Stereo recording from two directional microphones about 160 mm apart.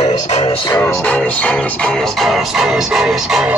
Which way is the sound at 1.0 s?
10° left (ahead or behind).